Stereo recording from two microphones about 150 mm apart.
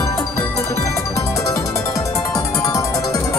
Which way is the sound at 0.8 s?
20° left (ahead or behind).